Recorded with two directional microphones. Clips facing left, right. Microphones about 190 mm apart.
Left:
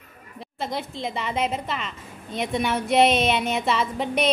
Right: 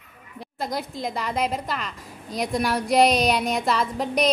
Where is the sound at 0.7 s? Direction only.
45° right (ahead or behind).